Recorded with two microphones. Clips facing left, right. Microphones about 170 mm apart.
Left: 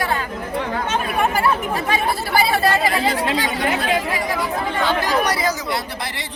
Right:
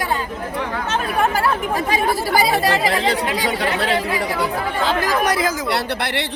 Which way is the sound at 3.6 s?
70° right (ahead or behind).